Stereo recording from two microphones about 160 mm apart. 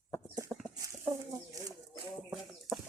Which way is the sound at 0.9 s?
20° right (ahead or behind).